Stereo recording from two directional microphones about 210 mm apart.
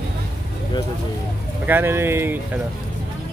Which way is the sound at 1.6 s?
10° right (ahead or behind).